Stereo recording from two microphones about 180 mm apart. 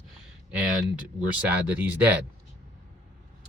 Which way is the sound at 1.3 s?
10° right (ahead or behind).